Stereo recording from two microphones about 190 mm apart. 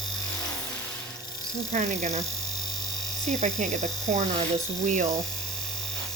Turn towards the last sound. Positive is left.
turn(degrees=-40)  # may be behind; listen again after turning